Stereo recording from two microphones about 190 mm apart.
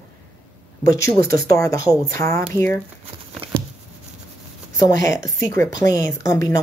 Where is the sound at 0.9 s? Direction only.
15° left (ahead or behind).